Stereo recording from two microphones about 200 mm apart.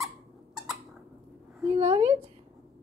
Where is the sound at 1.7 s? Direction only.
30° right (ahead or behind).